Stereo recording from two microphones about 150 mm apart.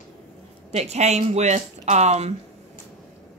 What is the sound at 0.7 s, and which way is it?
Speech, 45° right (ahead or behind).